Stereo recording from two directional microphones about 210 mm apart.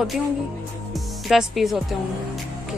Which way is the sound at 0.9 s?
Centre (ahead or behind).